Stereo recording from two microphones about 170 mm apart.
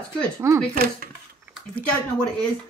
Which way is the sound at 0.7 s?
60° right (ahead or behind).